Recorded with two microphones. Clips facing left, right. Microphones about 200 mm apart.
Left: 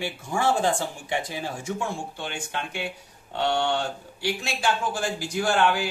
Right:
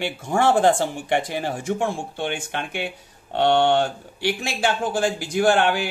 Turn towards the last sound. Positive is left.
turn(degrees=-65)  # may be behind; listen again after turning